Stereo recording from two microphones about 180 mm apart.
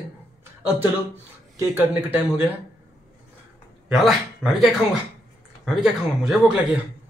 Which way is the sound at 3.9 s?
Centre (ahead or behind).